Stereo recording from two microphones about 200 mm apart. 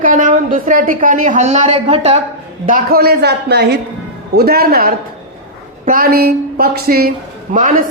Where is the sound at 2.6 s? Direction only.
45° right (ahead or behind).